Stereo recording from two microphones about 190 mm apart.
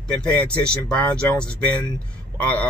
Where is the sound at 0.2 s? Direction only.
5° left (ahead or behind).